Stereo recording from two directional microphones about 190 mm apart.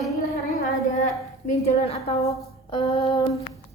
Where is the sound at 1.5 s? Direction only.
35° left (ahead or behind).